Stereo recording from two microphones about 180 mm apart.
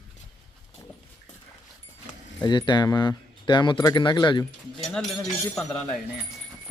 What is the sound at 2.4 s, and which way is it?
Speech, 25° left (ahead or behind).